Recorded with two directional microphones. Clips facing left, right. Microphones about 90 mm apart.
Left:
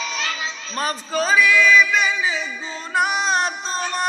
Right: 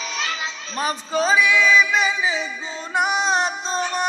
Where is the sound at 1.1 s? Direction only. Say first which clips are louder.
Left 1 dB; 20° right (ahead or behind).